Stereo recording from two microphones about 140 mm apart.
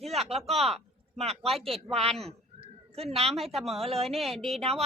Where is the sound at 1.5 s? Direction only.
Centre (ahead or behind).